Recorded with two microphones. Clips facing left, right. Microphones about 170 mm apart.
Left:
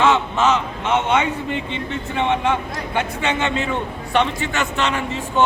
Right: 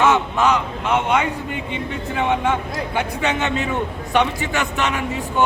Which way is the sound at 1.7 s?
10° right (ahead or behind).